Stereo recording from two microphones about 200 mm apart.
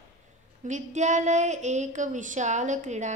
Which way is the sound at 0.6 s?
35° right (ahead or behind).